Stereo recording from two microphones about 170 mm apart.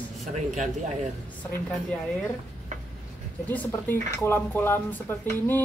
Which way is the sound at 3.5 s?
10° left (ahead or behind).